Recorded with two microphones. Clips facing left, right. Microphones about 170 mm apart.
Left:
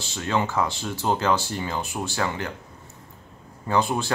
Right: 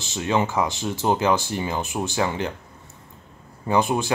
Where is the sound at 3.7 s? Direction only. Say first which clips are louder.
Right 2 dB; 15° right (ahead or behind).